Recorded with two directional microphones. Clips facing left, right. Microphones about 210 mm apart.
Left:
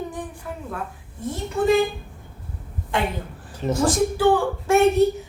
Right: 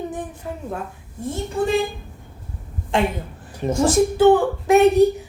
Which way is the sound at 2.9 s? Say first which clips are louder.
Right 4 dB; 25° right (ahead or behind).